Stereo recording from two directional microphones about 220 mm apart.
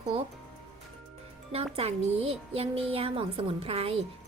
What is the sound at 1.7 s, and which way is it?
A woman's voice, 30° right (ahead or behind).